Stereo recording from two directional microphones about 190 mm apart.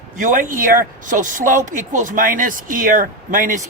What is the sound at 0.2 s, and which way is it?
Speech, 45° right (ahead or behind).